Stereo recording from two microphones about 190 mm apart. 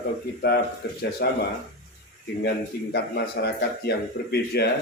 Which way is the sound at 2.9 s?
60° left (ahead or behind).